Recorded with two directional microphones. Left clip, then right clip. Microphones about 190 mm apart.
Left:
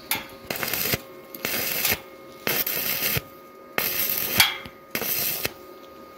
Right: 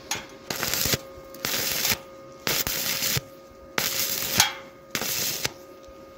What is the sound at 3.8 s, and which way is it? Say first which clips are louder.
Coin: right 1 dB; 10° right (ahead or behind).